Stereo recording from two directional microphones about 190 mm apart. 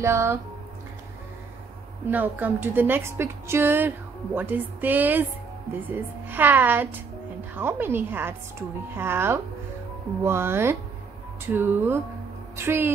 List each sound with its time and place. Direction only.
0.0 s a woman's voice: 15° right (ahead or behind)
2.0 s a woman's voice: 10° right (ahead or behind)